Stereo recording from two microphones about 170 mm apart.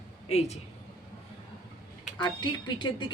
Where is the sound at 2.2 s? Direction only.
25° left (ahead or behind).